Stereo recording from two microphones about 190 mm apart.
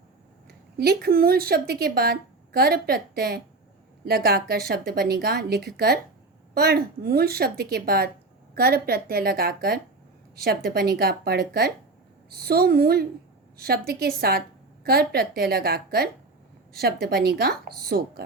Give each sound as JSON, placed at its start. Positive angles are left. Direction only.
{"t": 0.4, "sound": "a woman's voice", "side_deg": -55}